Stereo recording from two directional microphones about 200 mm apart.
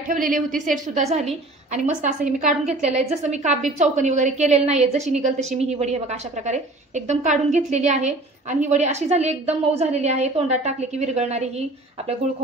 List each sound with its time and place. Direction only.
0.1 s a woman's voice: 45° right (ahead or behind)